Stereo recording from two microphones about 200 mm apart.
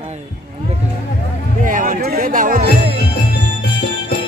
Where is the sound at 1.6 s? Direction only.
40° right (ahead or behind).